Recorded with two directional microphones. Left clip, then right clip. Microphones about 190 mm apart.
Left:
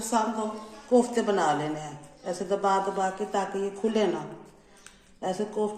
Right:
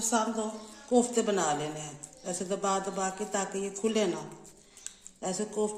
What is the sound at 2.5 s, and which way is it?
A woman's voice, 50° right (ahead or behind).